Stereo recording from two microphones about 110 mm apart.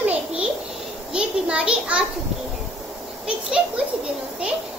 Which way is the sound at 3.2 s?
10° right (ahead or behind).